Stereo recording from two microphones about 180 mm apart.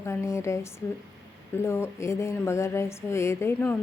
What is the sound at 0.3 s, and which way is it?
Speech, 15° left (ahead or behind).